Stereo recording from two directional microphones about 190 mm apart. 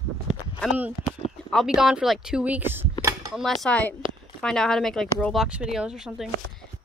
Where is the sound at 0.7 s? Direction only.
10° right (ahead or behind).